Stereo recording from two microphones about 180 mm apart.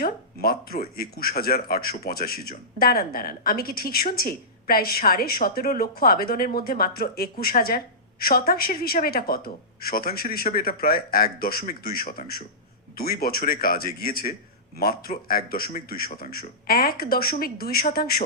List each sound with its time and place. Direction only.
0.0 s speech: 55° left (ahead or behind)